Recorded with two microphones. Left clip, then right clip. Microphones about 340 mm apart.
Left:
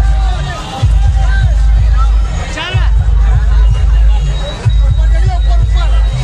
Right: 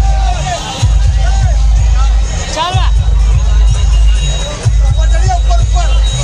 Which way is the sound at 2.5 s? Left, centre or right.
Centre.